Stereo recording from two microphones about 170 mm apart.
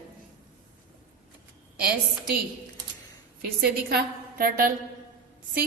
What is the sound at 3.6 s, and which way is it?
A woman's voice, 65° right (ahead or behind).